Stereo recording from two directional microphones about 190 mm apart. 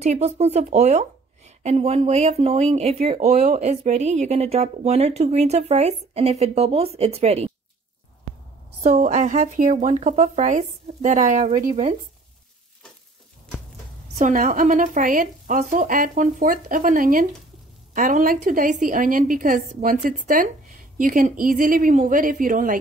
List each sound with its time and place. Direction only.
0.0 s a woman's voice: 35° right (ahead or behind)
8.8 s a woman's voice: 35° right (ahead or behind)
14.1 s a woman's voice: 45° right (ahead or behind)